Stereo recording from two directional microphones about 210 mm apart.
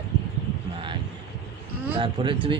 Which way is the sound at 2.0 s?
25° right (ahead or behind).